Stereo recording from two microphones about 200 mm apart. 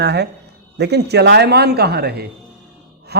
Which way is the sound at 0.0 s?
55° right (ahead or behind).